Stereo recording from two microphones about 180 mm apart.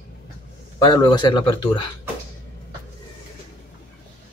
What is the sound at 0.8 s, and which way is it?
Speech, 25° left (ahead or behind).